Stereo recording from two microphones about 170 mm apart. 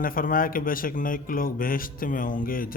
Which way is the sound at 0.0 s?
55° left (ahead or behind).